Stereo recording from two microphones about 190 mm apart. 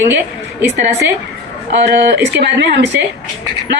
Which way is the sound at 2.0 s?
65° right (ahead or behind).